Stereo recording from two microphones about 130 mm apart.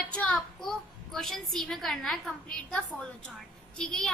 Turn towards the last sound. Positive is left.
turn(degrees=5)  # may be behind; listen again after turning